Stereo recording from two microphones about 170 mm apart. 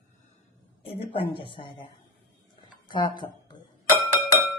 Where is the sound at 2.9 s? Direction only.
25° left (ahead or behind).